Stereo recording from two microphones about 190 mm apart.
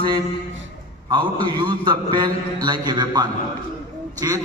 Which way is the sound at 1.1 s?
25° right (ahead or behind).